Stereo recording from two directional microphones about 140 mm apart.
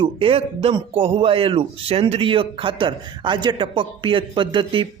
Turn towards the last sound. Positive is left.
turn(degrees=-35)  # may be behind; listen again after turning